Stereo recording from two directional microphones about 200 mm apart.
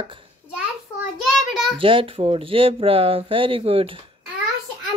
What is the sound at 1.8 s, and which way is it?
Speech, 25° right (ahead or behind).